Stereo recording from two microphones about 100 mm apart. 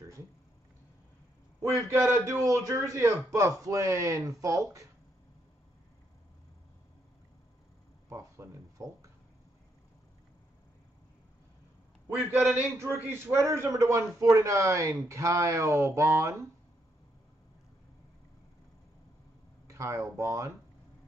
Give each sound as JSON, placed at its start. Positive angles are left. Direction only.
{"t": 1.6, "sound": "speech", "side_deg": -30}
{"t": 8.1, "sound": "a sound", "side_deg": -30}
{"t": 12.2, "sound": "a man's voice", "side_deg": -25}
{"t": 19.7, "sound": "speech", "side_deg": -30}